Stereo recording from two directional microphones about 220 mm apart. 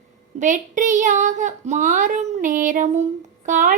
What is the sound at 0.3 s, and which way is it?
Speech, 35° right (ahead or behind).